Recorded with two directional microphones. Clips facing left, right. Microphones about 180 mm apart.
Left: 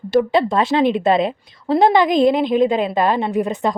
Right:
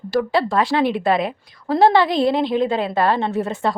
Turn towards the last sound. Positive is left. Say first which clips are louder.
# left 2 dB
turn(degrees=15)  # may be behind; listen again after turning